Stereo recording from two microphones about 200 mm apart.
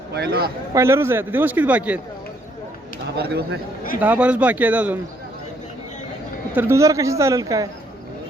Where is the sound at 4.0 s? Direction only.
5° right (ahead or behind).